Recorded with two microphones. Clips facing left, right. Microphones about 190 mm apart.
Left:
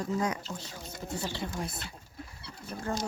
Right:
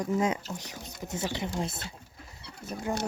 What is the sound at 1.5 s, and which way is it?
Vehicle, 25° right (ahead or behind).